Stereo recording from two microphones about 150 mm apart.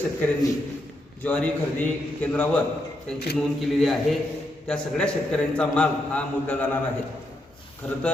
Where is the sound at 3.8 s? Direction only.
Centre (ahead or behind).